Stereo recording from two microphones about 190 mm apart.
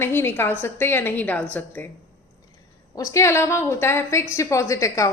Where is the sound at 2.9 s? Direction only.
15° left (ahead or behind).